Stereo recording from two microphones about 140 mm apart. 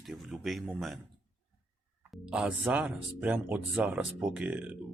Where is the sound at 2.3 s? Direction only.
10° right (ahead or behind).